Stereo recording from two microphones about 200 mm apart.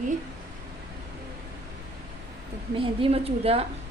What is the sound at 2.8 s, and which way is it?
Speech, 30° right (ahead or behind).